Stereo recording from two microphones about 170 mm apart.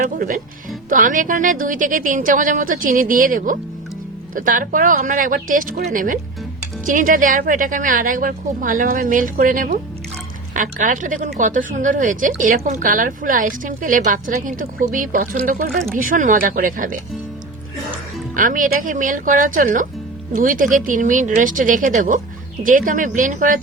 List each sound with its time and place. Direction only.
0.0 s a woman's voice: 50° right (ahead or behind)
18.3 s a woman's voice: 50° right (ahead or behind)